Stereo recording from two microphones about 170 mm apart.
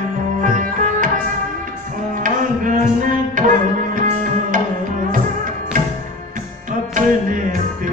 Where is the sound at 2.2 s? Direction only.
50° right (ahead or behind).